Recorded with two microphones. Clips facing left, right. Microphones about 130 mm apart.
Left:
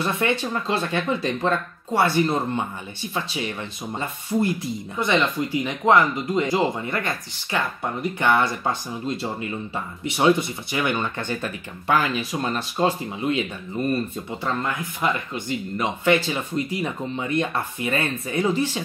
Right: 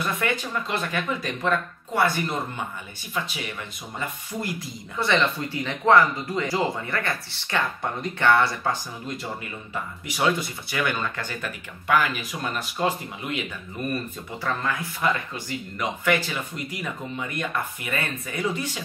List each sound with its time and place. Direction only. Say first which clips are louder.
0.0 s speech: left 4 dB; 25° left (ahead or behind)
4.0 s speech: left 8 dB; 25° left (ahead or behind)
14.4 s speech: left 1 dB; 20° left (ahead or behind)